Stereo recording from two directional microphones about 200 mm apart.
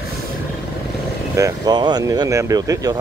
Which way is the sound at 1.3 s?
20° right (ahead or behind).